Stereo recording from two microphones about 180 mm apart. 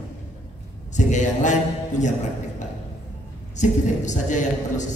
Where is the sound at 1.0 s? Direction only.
40° left (ahead or behind).